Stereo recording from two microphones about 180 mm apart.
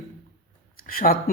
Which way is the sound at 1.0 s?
50° left (ahead or behind).